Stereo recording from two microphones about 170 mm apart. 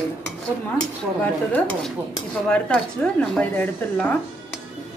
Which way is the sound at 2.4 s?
5° left (ahead or behind).